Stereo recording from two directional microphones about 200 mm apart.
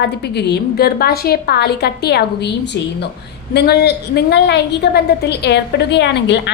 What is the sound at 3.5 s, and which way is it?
A woman's voice, 55° left (ahead or behind).